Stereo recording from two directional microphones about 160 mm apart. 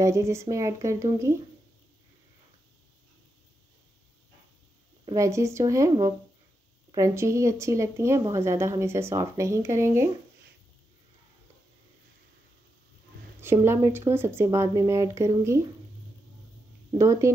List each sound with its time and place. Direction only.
0.0 s speech: 20° right (ahead or behind)
5.0 s speech: 20° right (ahead or behind)
13.4 s speech: 15° right (ahead or behind)
16.9 s speech: 20° right (ahead or behind)